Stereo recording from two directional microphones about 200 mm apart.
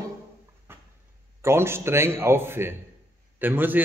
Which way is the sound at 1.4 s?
10° right (ahead or behind).